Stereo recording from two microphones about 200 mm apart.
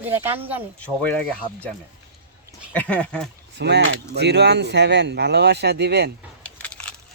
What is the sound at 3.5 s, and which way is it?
Speech, 60° right (ahead or behind).